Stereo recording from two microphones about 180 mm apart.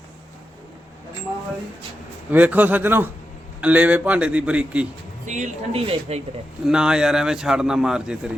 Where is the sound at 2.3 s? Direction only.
10° right (ahead or behind).